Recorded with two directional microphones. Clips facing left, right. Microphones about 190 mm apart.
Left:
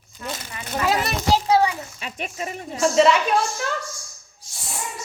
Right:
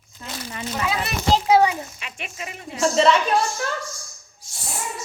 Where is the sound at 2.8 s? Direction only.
5° left (ahead or behind).